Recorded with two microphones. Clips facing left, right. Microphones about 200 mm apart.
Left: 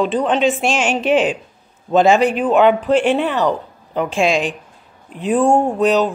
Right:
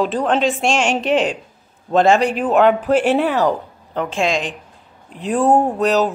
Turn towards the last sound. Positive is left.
turn(degrees=0)  # may be behind; listen again after turning